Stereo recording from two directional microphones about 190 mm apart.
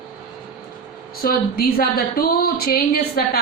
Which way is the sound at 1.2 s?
50° left (ahead or behind).